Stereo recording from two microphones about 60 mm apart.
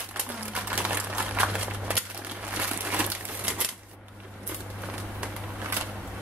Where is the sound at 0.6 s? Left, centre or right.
Right.